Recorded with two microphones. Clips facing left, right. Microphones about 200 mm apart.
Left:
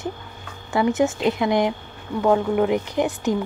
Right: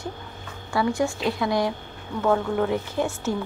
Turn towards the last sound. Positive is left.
turn(degrees=15)  # may be behind; listen again after turning